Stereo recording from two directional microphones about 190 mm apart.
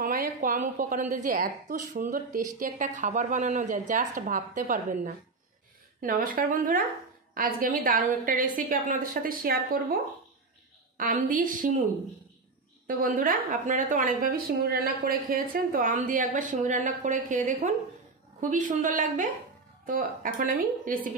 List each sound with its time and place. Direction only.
0.0 s a woman's voice: 45° right (ahead or behind)
11.0 s a woman's voice: 45° right (ahead or behind)
12.8 s a woman's voice: 45° right (ahead or behind)